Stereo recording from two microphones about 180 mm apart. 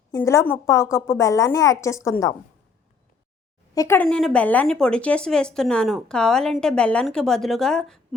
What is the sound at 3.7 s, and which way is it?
Speech, 15° left (ahead or behind).